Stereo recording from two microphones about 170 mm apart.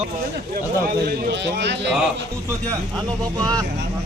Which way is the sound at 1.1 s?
75° right (ahead or behind).